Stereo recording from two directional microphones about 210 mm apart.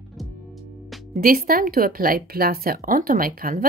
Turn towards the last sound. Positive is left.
turn(degrees=-40)  # may be behind; listen again after turning